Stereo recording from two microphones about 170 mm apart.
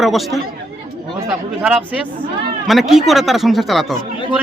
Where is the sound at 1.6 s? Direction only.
10° right (ahead or behind).